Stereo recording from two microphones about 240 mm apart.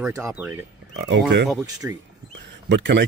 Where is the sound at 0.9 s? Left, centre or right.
Right.